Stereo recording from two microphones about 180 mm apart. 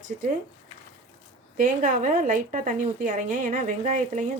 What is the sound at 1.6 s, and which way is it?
A woman's voice, 45° right (ahead or behind).